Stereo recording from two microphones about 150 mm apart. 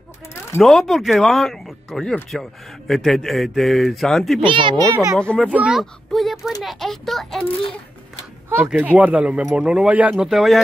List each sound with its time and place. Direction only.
0.6 s speech: centre (ahead or behind)
4.4 s speech: 35° right (ahead or behind)
5.1 s speech: 5° left (ahead or behind)
5.5 s speech: 5° right (ahead or behind)
8.7 s speech: 10° right (ahead or behind)